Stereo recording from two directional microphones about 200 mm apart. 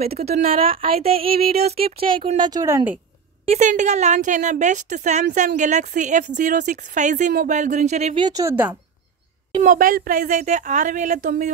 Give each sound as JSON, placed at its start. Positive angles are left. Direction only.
{"t": 0.0, "sound": "a woman's voice", "side_deg": -30}
{"t": 1.2, "sound": "a sound", "side_deg": -50}
{"t": 1.5, "sound": "speech", "side_deg": -30}
{"t": 2.0, "sound": "a sound", "side_deg": -45}
{"t": 2.3, "sound": "a woman's voice", "side_deg": -20}
{"t": 3.4, "sound": "speech", "side_deg": -35}
{"t": 8.3, "sound": "a woman's voice", "side_deg": -15}
{"t": 9.6, "sound": "speech", "side_deg": -40}